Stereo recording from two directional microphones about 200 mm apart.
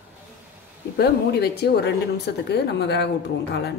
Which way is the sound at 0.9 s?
55° left (ahead or behind).